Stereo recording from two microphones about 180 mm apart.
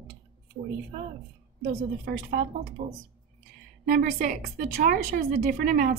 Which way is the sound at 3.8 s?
50° right (ahead or behind).